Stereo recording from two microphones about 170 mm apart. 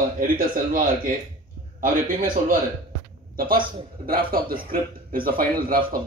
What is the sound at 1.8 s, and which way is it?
A man's voice, 55° right (ahead or behind).